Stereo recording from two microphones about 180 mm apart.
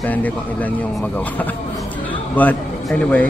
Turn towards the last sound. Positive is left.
turn(degrees=5)  # may be behind; listen again after turning